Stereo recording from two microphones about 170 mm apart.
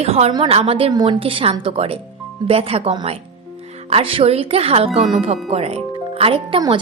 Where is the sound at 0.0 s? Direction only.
40° right (ahead or behind).